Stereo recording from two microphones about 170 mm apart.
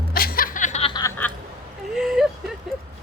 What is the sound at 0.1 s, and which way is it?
Music, 60° left (ahead or behind).